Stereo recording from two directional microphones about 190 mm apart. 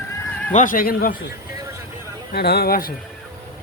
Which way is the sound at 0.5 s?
45° left (ahead or behind).